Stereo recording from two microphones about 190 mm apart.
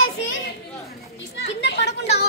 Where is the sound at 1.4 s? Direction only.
65° left (ahead or behind).